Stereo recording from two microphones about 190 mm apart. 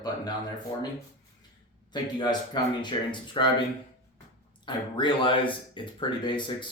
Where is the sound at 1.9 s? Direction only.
25° left (ahead or behind).